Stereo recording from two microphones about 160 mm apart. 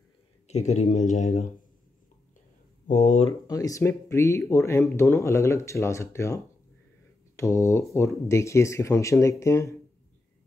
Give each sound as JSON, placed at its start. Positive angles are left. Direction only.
{"t": 0.5, "sound": "speech", "side_deg": 45}
{"t": 2.9, "sound": "speech", "side_deg": 45}
{"t": 3.4, "sound": "speech", "side_deg": 20}